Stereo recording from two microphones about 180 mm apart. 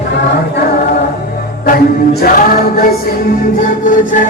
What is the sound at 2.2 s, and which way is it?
Music, 55° left (ahead or behind).